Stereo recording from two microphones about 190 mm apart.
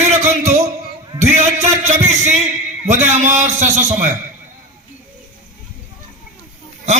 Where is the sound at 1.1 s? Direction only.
20° right (ahead or behind).